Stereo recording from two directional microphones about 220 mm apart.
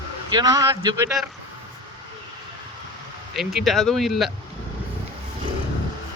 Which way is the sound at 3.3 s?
Centre (ahead or behind).